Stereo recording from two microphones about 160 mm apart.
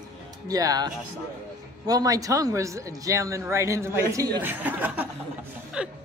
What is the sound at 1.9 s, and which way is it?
A man's voice, 20° right (ahead or behind).